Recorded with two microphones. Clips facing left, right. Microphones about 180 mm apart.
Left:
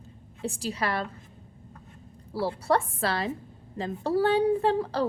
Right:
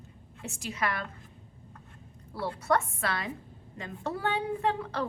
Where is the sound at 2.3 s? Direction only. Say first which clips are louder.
Left 3 dB; 30° left (ahead or behind).